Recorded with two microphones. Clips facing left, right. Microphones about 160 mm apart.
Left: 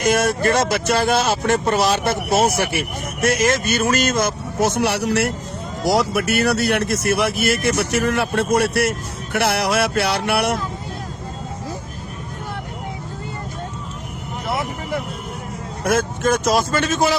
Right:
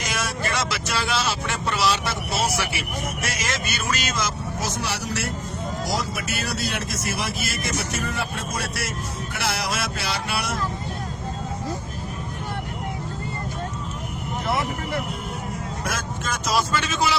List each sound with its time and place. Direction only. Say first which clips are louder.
0.0 s speech: left 11 dB; 50° left (ahead or behind)
14.4 s vehicle: left 1 dB; 10° left (ahead or behind)
15.8 s speech: left 14 dB; 55° left (ahead or behind)